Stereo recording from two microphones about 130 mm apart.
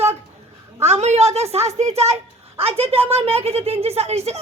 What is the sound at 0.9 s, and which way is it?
Speech, 55° right (ahead or behind).